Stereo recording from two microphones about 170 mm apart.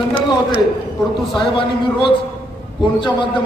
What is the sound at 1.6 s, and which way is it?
Speech, 30° left (ahead or behind).